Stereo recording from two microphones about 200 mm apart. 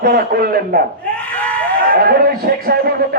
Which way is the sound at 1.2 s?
5° left (ahead or behind).